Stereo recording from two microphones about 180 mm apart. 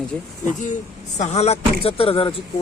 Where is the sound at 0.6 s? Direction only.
40° left (ahead or behind).